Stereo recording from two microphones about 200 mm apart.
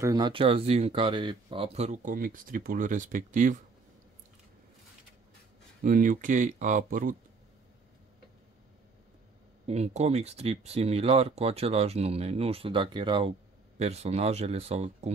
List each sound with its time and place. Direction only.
0.0 s speech: 20° right (ahead or behind); by 3.5 s 40° right (ahead or behind)
5.9 s speech: 40° right (ahead or behind)
9.7 s speech: 35° right (ahead or behind)